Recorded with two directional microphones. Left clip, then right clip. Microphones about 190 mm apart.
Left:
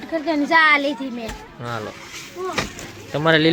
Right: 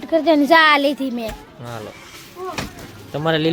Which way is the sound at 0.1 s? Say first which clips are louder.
Right 5 dB; 70° right (ahead or behind).